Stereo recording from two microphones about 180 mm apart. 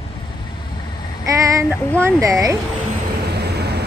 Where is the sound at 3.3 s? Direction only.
65° right (ahead or behind).